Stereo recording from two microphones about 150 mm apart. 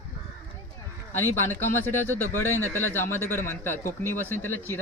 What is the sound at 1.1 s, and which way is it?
Speech, 15° left (ahead or behind).